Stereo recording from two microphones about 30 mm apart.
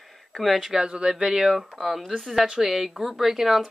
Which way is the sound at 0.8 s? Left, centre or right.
Right.